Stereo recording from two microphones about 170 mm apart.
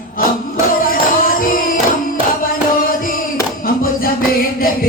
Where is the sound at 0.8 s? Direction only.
55° left (ahead or behind).